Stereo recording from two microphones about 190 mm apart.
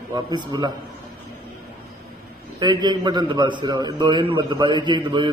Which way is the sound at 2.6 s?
20° right (ahead or behind).